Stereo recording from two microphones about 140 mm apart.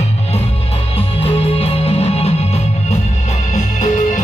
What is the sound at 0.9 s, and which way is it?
Music, 45° left (ahead or behind).